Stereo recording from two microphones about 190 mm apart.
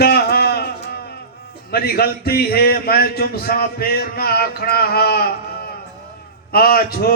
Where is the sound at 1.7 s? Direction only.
55° left (ahead or behind).